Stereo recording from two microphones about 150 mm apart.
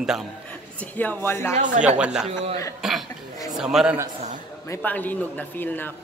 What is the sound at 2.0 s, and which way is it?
Speech, 5° right (ahead or behind).